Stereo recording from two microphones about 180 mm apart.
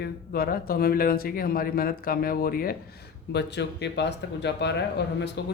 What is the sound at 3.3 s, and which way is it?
Speech, 70° left (ahead or behind).